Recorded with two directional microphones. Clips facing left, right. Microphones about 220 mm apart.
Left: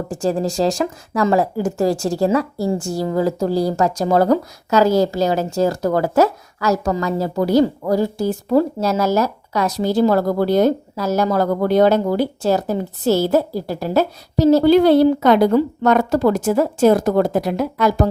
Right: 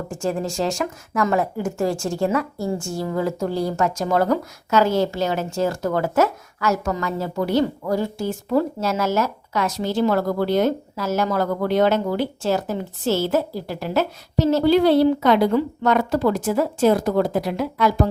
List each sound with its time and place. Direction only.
0.1 s speech: 35° left (ahead or behind)